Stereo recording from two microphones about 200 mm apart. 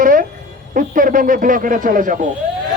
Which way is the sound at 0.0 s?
45° right (ahead or behind).